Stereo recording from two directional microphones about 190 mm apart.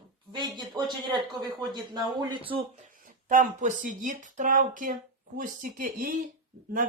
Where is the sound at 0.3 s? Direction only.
25° right (ahead or behind).